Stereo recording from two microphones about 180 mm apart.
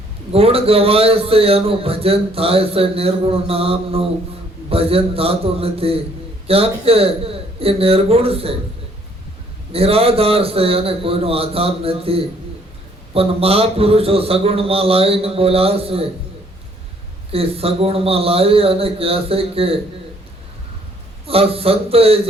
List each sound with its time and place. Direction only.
0.3 s a man's voice: 35° right (ahead or behind)
9.7 s a man's voice: 35° right (ahead or behind)
17.3 s a man's voice: 30° right (ahead or behind)
21.2 s a man's voice: 30° right (ahead or behind)